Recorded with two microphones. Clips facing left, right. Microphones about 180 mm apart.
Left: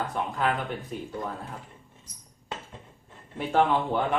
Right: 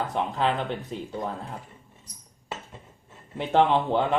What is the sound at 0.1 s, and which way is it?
Speech, 25° right (ahead or behind).